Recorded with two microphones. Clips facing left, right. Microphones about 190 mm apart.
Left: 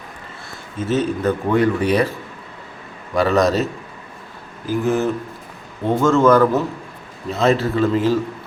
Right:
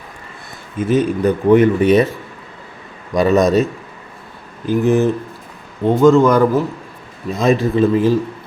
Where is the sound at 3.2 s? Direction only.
20° right (ahead or behind).